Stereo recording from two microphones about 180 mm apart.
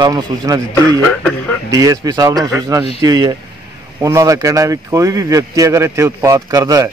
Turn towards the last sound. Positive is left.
turn(degrees=-20)  # may be behind; listen again after turning